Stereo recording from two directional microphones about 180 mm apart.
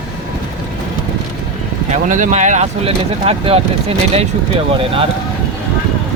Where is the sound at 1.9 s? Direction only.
45° right (ahead or behind).